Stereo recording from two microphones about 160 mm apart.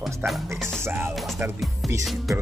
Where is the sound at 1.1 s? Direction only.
Centre (ahead or behind).